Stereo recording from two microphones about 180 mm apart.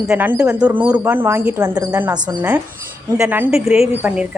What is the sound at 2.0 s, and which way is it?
Speech, 10° right (ahead or behind).